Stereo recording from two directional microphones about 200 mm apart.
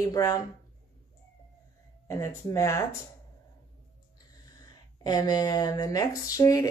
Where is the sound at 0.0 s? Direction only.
15° left (ahead or behind).